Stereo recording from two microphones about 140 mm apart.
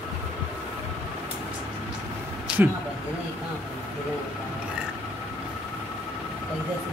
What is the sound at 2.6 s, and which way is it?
Speech, 10° right (ahead or behind).